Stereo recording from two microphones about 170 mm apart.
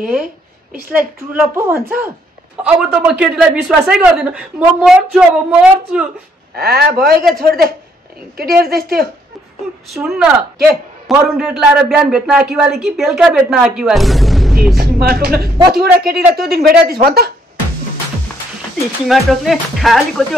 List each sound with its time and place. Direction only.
0.0 s a woman's voice: 55° right (ahead or behind)
1.3 s a man's voice: 15° right (ahead or behind)
6.5 s a woman's voice: 65° right (ahead or behind)
9.8 s a man's voice: centre (ahead or behind)
14.8 s a woman's voice: 65° right (ahead or behind)
19.0 s a man's voice: centre (ahead or behind)